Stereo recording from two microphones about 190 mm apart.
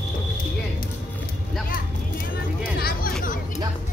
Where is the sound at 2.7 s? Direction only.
50° left (ahead or behind).